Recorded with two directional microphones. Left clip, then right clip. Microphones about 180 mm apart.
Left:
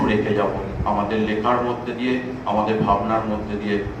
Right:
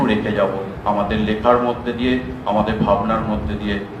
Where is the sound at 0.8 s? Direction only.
70° left (ahead or behind).